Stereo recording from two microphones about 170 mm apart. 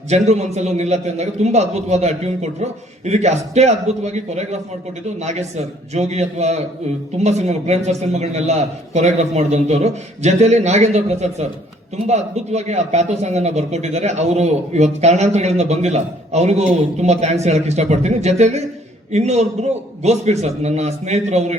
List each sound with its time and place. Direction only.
0.1 s speech: 40° right (ahead or behind)